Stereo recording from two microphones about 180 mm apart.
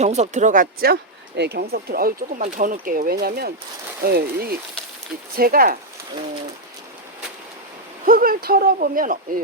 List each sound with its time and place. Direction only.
0.0 s speech: 40° right (ahead or behind)
1.4 s speech: 65° right (ahead or behind)
8.0 s speech: 55° right (ahead or behind)